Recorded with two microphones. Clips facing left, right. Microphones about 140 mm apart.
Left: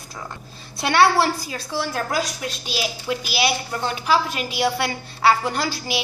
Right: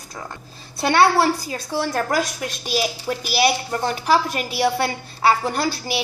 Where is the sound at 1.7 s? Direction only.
50° right (ahead or behind).